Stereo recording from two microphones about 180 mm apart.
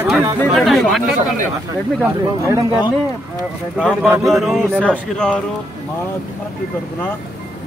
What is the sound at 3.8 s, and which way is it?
A man's voice, 5° right (ahead or behind).